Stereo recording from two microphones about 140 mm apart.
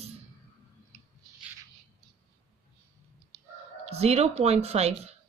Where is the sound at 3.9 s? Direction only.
50° right (ahead or behind).